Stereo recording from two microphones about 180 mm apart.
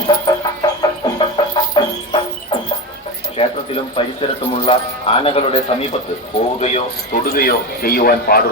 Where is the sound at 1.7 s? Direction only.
25° left (ahead or behind).